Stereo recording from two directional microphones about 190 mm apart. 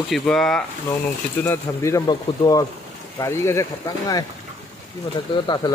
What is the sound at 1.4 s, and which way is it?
Speech, 15° left (ahead or behind).